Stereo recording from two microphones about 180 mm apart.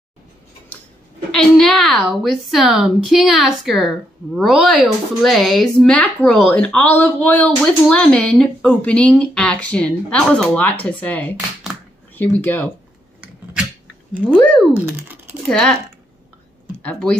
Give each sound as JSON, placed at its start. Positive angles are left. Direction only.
{"t": 1.3, "sound": "a woman's voice", "side_deg": 0}
{"t": 14.3, "sound": "speech", "side_deg": 5}
{"t": 14.9, "sound": "typing", "side_deg": -10}
{"t": 16.8, "sound": "a woman's voice", "side_deg": 5}